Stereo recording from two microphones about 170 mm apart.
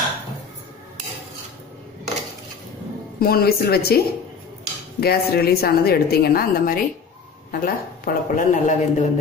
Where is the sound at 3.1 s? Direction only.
65° left (ahead or behind).